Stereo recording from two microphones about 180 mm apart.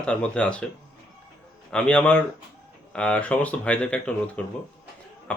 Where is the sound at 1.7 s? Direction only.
5° left (ahead or behind).